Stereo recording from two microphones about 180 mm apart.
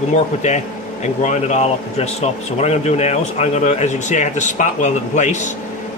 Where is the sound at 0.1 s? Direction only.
40° left (ahead or behind).